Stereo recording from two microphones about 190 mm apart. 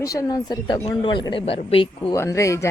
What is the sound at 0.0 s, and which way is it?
Speech, 15° left (ahead or behind).